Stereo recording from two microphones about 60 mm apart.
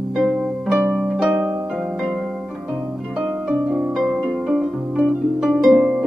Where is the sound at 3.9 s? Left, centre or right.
Centre.